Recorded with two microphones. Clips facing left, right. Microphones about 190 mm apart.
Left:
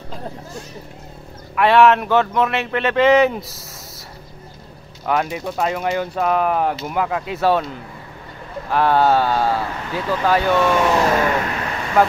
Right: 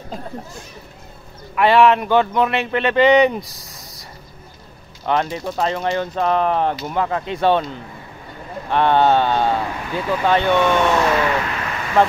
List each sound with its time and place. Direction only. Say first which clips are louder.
1.5 s speech: even; centre (ahead or behind)
5.0 s speech: even; 5° left (ahead or behind)
11.1 s a sound: left 1 dB; 40° left (ahead or behind)
12.0 s speech: even; 5° left (ahead or behind)